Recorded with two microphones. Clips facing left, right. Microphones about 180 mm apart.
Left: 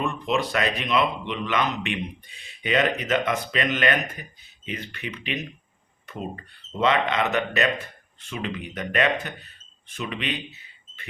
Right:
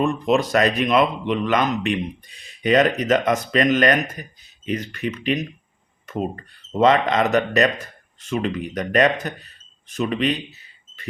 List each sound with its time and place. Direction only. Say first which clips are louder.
0.0 s a man's voice: right 6 dB; 40° right (ahead or behind)